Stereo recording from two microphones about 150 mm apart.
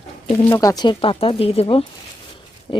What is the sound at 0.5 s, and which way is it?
Speech, 25° left (ahead or behind).